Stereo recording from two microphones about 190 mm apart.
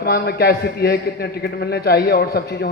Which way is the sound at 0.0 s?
55° left (ahead or behind).